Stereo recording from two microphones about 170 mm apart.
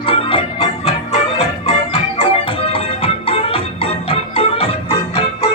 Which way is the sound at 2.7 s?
35° left (ahead or behind).